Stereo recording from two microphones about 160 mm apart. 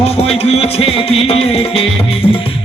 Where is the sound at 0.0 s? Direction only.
40° left (ahead or behind).